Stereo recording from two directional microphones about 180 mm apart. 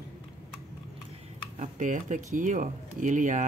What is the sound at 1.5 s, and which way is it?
Speech, 45° right (ahead or behind).